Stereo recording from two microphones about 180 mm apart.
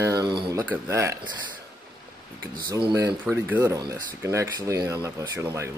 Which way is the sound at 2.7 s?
25° right (ahead or behind).